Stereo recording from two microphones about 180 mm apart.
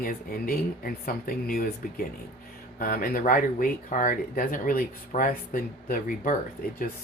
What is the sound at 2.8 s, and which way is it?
Speech, 55° left (ahead or behind).